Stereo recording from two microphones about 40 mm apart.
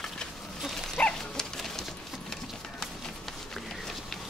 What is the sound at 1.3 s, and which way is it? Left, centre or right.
Dog, centre.